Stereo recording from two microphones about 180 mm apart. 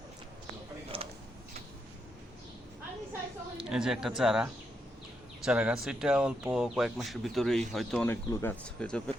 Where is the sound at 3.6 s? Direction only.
5° right (ahead or behind).